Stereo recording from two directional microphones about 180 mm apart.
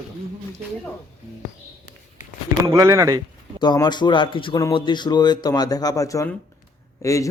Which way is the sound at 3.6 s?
25° left (ahead or behind).